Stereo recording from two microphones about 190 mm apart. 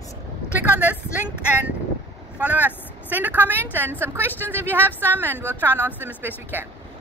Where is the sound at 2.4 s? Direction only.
10° right (ahead or behind).